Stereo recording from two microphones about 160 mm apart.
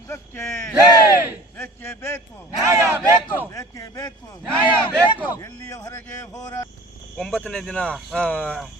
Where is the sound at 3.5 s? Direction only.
20° left (ahead or behind).